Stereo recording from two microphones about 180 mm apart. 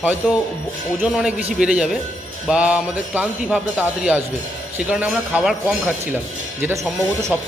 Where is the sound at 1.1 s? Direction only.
5° right (ahead or behind).